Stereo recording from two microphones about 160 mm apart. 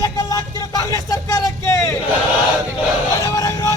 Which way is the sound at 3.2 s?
20° left (ahead or behind).